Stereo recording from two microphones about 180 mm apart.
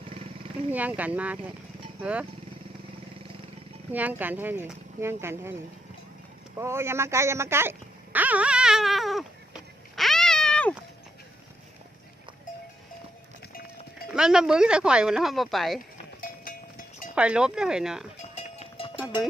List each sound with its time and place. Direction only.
0.7 s speech: 10° right (ahead or behind)
3.9 s speech: 10° right (ahead or behind)
6.6 s a sound: 15° right (ahead or behind); by 10.8 s 5° left (ahead or behind)
14.1 s speech: 5° right (ahead or behind)
16.2 s cowbell: 50° left (ahead or behind)
17.2 s speech: 5° right (ahead or behind)
18.8 s music: 30° left (ahead or behind)